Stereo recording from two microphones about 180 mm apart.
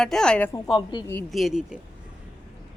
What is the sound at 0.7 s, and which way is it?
Speech, 25° left (ahead or behind).